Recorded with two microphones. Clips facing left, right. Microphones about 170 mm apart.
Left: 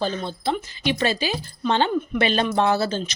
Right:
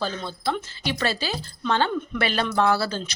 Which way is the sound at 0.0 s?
20° left (ahead or behind).